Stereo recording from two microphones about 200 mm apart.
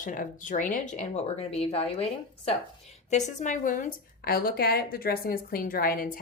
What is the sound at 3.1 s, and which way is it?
A woman's voice, 35° left (ahead or behind).